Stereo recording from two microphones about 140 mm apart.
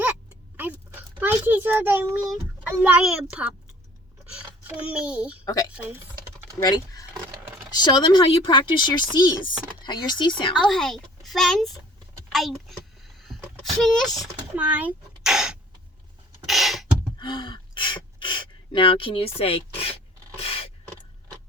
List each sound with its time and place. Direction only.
0.0 s a sound: 10° right (ahead or behind)
1.2 s a child's voice: 15° right (ahead or behind)
6.6 s speech: 25° left (ahead or behind)
10.5 s speech: 5° left (ahead or behind)
12.3 s a sound: centre (ahead or behind)
13.8 s speech: 5° left (ahead or behind)
14.5 s speech: 10° right (ahead or behind)
16.5 s beatboxing: centre (ahead or behind)
17.2 s gasp: 35° left (ahead or behind)
20.4 s a sound: 45° left (ahead or behind)